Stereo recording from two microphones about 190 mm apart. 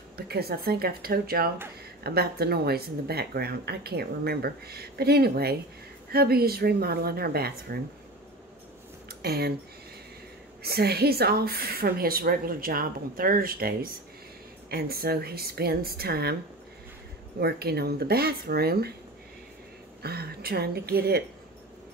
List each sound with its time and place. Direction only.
0.3 s speech: 55° right (ahead or behind)
9.2 s speech: 55° right (ahead or behind)
10.6 s speech: 55° right (ahead or behind)
17.4 s speech: 55° right (ahead or behind)
20.0 s speech: 55° right (ahead or behind)